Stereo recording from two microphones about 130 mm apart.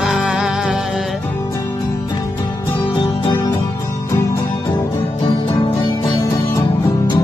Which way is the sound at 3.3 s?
20° left (ahead or behind).